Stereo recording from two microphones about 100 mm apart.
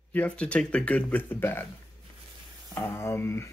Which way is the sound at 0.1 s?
15° left (ahead or behind).